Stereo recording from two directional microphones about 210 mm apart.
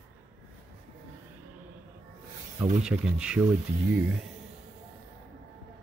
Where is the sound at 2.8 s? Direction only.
5° right (ahead or behind).